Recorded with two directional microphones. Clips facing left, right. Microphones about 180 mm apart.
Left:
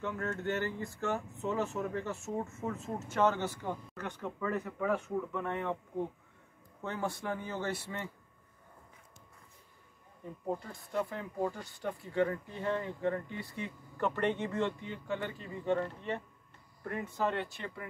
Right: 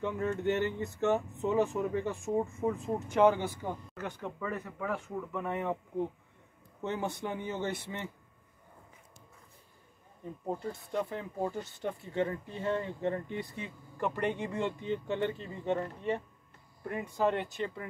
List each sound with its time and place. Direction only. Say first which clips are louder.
0.0 s speech: right 4 dB; 15° right (ahead or behind)
6.8 s speech: right 2 dB; 20° right (ahead or behind)
10.6 s speech: right 2 dB; 25° right (ahead or behind)